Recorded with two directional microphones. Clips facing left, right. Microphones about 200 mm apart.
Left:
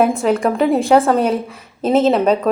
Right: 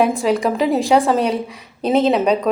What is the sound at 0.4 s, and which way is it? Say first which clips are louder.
A woman's voice: left 2 dB; centre (ahead or behind).